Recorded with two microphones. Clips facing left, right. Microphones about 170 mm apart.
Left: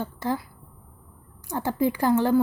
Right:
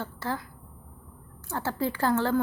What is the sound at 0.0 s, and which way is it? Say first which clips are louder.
Speech: left 5 dB; 15° left (ahead or behind).